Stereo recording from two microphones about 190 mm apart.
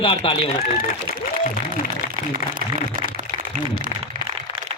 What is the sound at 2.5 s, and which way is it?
Speech, 50° right (ahead or behind).